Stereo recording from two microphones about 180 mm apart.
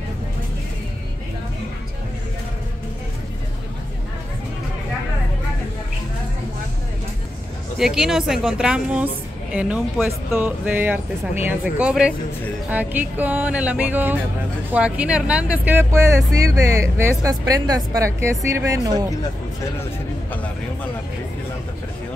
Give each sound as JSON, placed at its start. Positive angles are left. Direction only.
{"t": 7.8, "sound": "a woman's voice", "side_deg": 0}